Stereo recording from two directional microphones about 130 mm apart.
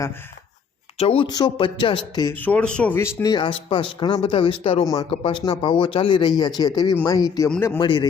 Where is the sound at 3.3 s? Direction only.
40° left (ahead or behind).